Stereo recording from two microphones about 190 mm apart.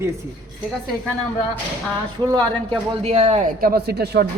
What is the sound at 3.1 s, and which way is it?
Speech, 40° right (ahead or behind).